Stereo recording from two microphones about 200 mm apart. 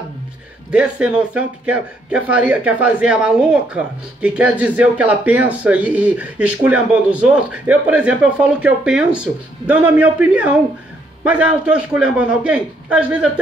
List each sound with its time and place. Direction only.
0.7 s a man's voice: 5° right (ahead or behind)